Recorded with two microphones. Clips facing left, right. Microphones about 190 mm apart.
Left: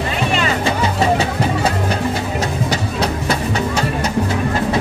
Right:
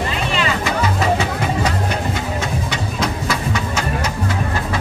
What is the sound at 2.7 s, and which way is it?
Train, 35° left (ahead or behind).